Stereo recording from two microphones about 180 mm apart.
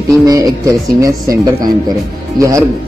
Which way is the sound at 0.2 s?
20° right (ahead or behind).